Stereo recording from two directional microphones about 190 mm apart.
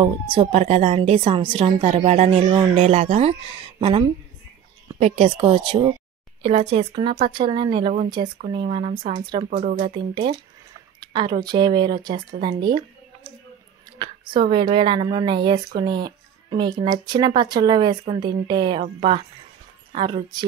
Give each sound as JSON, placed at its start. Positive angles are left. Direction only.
{"t": 0.0, "sound": "a woman's voice", "side_deg": -30}
{"t": 9.5, "sound": "a woman's voice", "side_deg": -40}
{"t": 13.9, "sound": "speech", "side_deg": -25}
{"t": 16.8, "sound": "speech", "side_deg": -20}